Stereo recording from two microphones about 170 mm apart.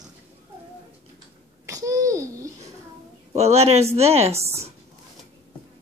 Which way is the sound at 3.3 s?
40° right (ahead or behind).